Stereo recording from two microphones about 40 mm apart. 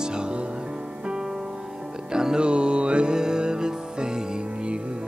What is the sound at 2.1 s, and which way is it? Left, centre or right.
Music, centre.